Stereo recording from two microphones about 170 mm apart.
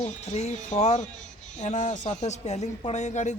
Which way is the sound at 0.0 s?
40° left (ahead or behind).